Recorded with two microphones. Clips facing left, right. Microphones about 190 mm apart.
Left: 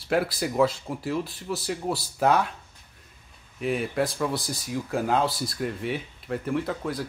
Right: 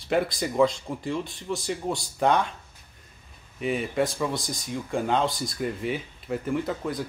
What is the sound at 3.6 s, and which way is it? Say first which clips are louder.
Speech: even; centre (ahead or behind).